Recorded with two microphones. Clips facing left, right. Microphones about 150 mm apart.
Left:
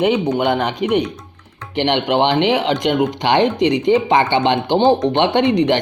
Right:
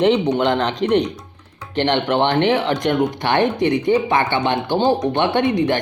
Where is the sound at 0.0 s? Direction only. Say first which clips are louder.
Even; 10° left (ahead or behind).